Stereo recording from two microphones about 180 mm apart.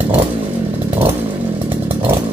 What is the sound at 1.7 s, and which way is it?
Chainsaw, 10° right (ahead or behind).